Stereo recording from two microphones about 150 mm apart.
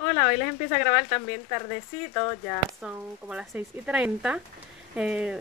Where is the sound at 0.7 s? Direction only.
30° left (ahead or behind).